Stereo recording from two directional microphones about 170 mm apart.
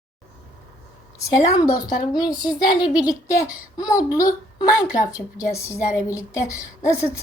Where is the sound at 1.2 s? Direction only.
20° left (ahead or behind).